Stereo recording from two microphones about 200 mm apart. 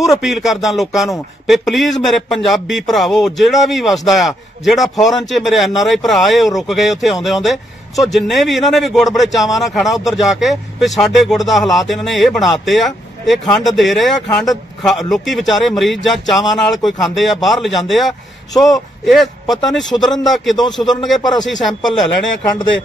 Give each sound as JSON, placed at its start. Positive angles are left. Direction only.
{"t": 0.0, "sound": "speech", "side_deg": 0}
{"t": 20.5, "sound": "speech", "side_deg": 20}
{"t": 21.5, "sound": "speech", "side_deg": 0}